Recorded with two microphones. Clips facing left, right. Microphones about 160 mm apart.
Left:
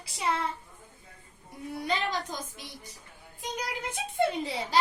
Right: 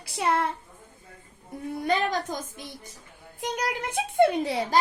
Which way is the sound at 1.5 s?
50° right (ahead or behind).